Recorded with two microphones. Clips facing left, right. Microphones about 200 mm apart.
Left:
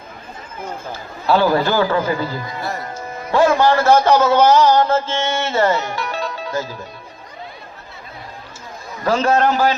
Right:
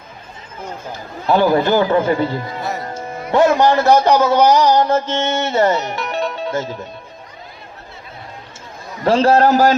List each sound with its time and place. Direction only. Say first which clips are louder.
0.9 s a man's voice: right 1 dB; 20° right (ahead or behind)
9.0 s a man's voice: right 4 dB; 30° right (ahead or behind)